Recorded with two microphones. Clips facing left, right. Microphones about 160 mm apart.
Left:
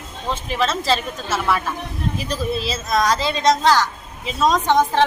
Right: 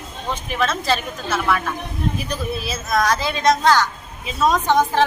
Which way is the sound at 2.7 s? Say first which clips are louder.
Right 1 dB; centre (ahead or behind).